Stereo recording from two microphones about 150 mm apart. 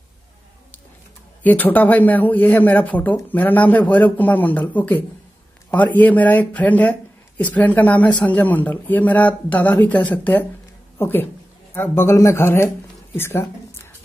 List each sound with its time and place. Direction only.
1.4 s a woman's voice: 10° left (ahead or behind)